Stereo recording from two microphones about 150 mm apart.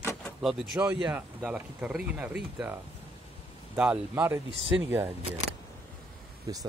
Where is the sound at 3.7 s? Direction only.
10° right (ahead or behind).